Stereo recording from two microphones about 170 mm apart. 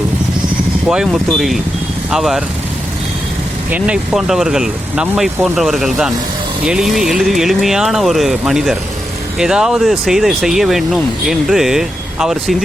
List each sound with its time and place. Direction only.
0.9 s speech: 5° right (ahead or behind)
3.7 s speech: 5° right (ahead or behind)